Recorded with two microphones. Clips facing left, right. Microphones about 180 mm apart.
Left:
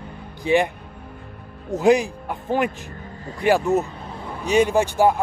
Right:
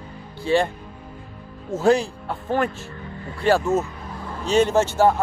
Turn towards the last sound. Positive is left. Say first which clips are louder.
# even
turn(degrees=15)  # may be behind; listen again after turning